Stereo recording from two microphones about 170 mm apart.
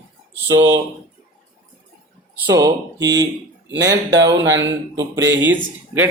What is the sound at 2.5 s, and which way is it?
Speech, 20° right (ahead or behind).